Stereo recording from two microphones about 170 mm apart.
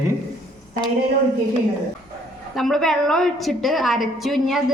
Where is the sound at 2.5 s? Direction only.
Centre (ahead or behind).